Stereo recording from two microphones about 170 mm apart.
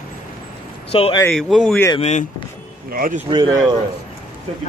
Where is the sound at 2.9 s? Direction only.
55° right (ahead or behind).